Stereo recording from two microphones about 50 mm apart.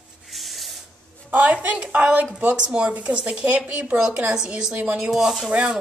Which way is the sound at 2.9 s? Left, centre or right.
Right.